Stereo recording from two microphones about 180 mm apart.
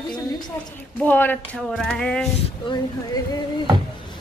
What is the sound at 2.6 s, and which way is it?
Speech, 25° left (ahead or behind).